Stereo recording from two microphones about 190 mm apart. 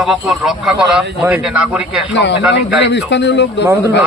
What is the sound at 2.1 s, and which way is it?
Speech, 70° left (ahead or behind).